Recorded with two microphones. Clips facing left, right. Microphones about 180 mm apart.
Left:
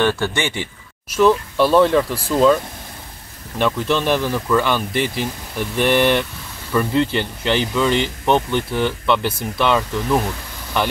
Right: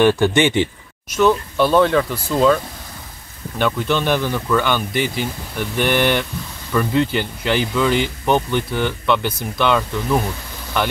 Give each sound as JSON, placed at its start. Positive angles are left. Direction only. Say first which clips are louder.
{"t": 0.0, "sound": "speech", "louder": "right 5 dB", "side_deg": -15}
{"t": 1.1, "sound": "speech", "louder": "left 1 dB", "side_deg": 5}